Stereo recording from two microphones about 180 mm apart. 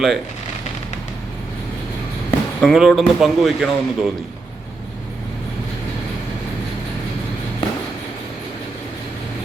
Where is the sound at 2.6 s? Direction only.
Centre (ahead or behind).